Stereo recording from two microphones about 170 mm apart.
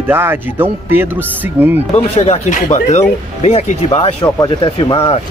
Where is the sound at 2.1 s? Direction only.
40° left (ahead or behind).